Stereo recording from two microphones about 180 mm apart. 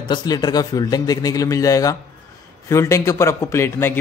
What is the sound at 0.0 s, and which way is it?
A man's voice, 25° left (ahead or behind).